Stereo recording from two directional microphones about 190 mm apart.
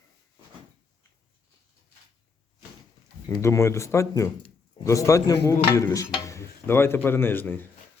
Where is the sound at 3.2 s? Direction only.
15° left (ahead or behind).